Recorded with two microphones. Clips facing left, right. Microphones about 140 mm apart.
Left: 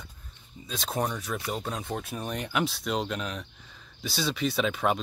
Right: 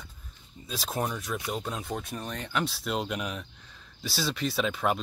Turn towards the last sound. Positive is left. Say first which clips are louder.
# left 1 dB
turn(degrees=0)  # may be behind; listen again after turning